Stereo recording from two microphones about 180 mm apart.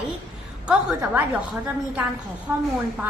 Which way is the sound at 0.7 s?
5° right (ahead or behind).